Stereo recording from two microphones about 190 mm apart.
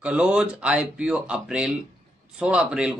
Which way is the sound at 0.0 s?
5° right (ahead or behind).